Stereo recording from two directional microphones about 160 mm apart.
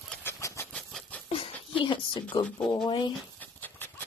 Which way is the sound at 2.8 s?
30° left (ahead or behind).